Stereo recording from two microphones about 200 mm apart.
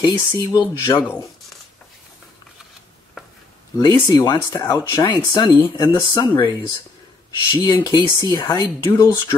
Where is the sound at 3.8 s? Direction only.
20° left (ahead or behind).